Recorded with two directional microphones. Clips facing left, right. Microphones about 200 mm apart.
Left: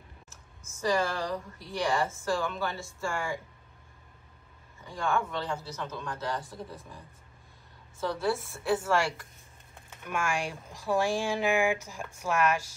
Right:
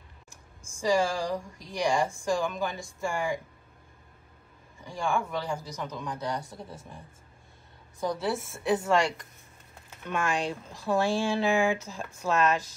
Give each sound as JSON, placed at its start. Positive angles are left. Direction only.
{"t": 0.3, "sound": "speech", "side_deg": -10}
{"t": 4.8, "sound": "speech", "side_deg": -10}
{"t": 8.2, "sound": "a woman's voice", "side_deg": 0}
{"t": 8.6, "sound": "speech", "side_deg": -20}
{"t": 10.4, "sound": "speech", "side_deg": 10}